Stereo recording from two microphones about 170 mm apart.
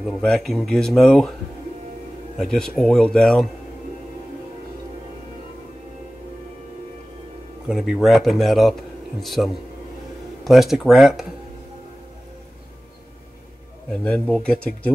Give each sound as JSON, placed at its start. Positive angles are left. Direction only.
{"t": 0.0, "sound": "speech", "side_deg": 0}
{"t": 2.3, "sound": "speech", "side_deg": 5}
{"t": 7.6, "sound": "speech", "side_deg": -5}
{"t": 13.8, "sound": "speech", "side_deg": 5}